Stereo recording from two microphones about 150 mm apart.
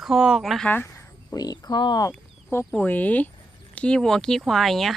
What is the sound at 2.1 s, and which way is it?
Speech, 15° left (ahead or behind).